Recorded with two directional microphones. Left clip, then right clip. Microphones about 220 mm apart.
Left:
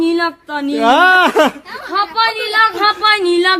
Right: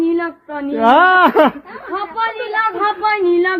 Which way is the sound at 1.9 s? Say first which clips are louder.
Left 5 dB; 35° left (ahead or behind).